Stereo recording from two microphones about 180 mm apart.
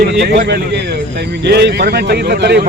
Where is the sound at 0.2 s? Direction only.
65° right (ahead or behind).